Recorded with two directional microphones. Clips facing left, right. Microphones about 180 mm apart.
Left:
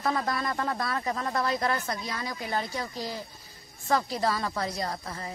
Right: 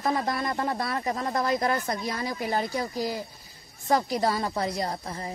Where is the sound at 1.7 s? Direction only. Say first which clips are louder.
Right 3 dB; 30° right (ahead or behind).